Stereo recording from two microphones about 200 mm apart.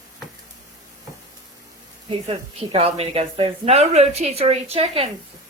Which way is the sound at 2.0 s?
30° right (ahead or behind).